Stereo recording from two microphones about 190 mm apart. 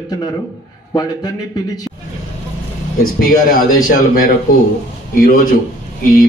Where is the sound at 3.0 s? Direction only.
50° left (ahead or behind).